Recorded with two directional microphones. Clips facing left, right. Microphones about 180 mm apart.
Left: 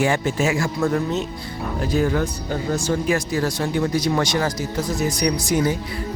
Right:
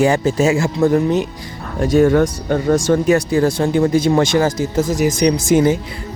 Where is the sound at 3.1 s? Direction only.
35° right (ahead or behind).